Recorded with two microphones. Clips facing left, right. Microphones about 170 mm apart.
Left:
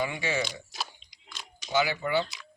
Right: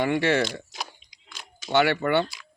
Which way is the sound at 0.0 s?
65° right (ahead or behind).